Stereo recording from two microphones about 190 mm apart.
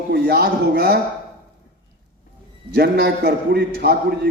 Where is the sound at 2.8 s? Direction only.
55° right (ahead or behind).